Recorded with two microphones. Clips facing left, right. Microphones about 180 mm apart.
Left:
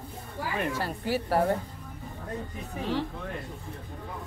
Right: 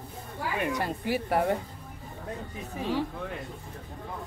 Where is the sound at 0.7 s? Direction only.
15° right (ahead or behind).